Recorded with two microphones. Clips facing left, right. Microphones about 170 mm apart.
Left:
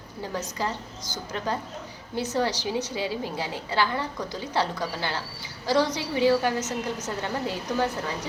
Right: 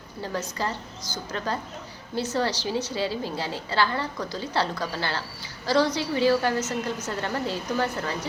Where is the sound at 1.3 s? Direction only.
15° left (ahead or behind).